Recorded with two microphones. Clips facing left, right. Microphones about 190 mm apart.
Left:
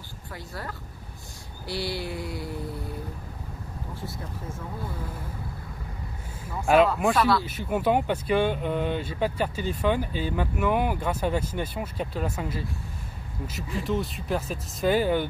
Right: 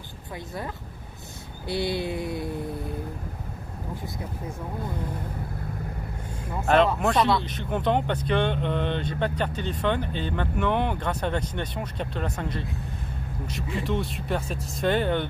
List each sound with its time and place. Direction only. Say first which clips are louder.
1.7 s speech: right 4 dB; 20° right (ahead or behind)
6.7 s speech: left 1 dB; 10° left (ahead or behind)
7.2 s speech: right 1 dB; 20° right (ahead or behind)
7.4 s speech: left 1 dB; 5° left (ahead or behind)